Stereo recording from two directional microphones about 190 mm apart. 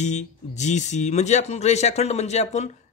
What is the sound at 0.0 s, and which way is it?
Speech, 40° left (ahead or behind).